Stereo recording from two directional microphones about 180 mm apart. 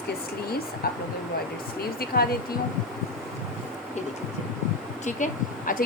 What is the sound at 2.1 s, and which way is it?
Speech, 55° left (ahead or behind).